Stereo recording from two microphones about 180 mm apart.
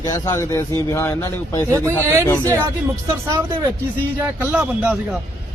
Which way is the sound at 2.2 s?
15° left (ahead or behind).